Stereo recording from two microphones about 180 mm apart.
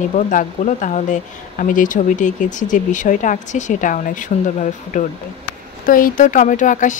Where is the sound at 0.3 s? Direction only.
45° left (ahead or behind).